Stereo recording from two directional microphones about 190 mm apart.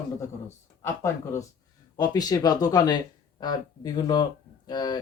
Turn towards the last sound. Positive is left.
turn(degrees=20)  # may be behind; listen again after turning